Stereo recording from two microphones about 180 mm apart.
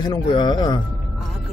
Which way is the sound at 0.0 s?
25° left (ahead or behind).